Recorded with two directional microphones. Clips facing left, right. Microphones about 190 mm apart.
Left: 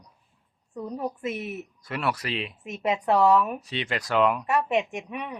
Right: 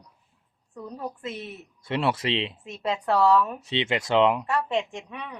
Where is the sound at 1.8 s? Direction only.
25° right (ahead or behind).